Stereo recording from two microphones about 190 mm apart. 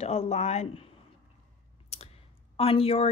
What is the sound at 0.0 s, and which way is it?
Speech, 35° left (ahead or behind).